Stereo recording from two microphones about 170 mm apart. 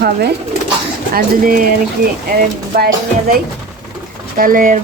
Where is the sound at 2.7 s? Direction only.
65° right (ahead or behind).